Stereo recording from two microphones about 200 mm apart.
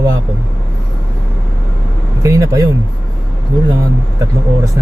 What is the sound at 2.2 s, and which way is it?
Speech, 15° right (ahead or behind).